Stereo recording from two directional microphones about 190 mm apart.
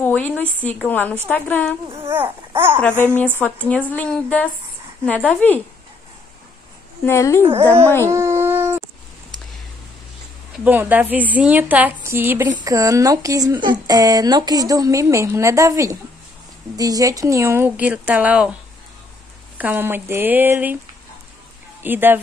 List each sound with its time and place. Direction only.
0.0 s a woman's voice: 10° left (ahead or behind)
1.9 s a sound: 15° right (ahead or behind)
3.3 s a woman's voice: 5° left (ahead or behind)
7.1 s a woman's voice: 15° left (ahead or behind)
8.1 s a sound: 15° right (ahead or behind)
10.6 s speech: 10° right (ahead or behind)
19.6 s speech: 10° right (ahead or behind)
21.8 s speech: 10° right (ahead or behind)